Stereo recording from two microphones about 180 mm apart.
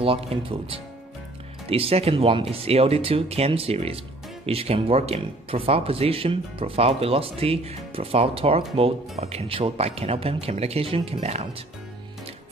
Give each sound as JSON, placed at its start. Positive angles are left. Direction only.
{"t": 0.0, "sound": "speech", "side_deg": -30}